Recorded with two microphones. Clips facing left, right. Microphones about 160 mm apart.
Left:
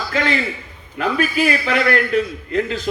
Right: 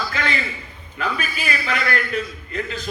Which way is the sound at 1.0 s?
70° left (ahead or behind).